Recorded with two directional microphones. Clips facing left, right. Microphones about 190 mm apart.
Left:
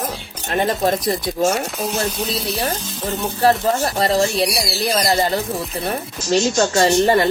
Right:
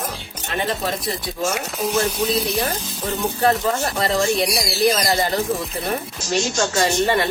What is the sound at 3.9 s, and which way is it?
Speech, 35° left (ahead or behind).